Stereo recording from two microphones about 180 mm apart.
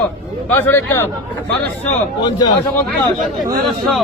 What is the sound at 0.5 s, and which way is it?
Speech, 10° left (ahead or behind).